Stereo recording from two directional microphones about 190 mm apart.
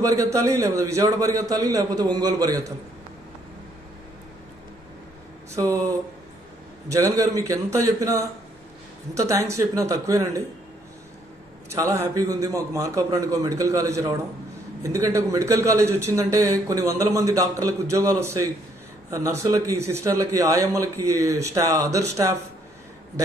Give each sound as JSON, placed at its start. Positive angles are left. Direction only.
{"t": 0.0, "sound": "a man's voice", "side_deg": -15}
{"t": 6.9, "sound": "a man's voice", "side_deg": -15}
{"t": 11.7, "sound": "a man's voice", "side_deg": -15}